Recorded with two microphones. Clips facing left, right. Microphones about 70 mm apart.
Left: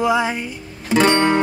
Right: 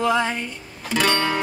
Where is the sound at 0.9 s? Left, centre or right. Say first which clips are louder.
Left 6 dB; left.